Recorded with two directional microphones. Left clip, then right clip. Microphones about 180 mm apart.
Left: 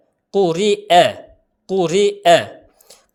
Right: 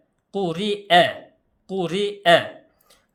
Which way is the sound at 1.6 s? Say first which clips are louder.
Left 9 dB; 35° left (ahead or behind).